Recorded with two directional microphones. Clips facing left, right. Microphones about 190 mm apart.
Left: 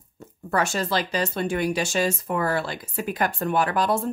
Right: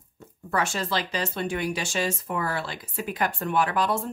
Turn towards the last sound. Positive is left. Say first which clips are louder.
# left 2 dB
turn(degrees=40)  # may be behind; listen again after turning